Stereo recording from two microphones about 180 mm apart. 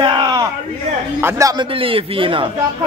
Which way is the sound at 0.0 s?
25° right (ahead or behind).